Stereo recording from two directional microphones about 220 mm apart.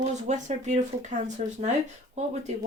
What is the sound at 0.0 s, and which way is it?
Speech, 35° right (ahead or behind).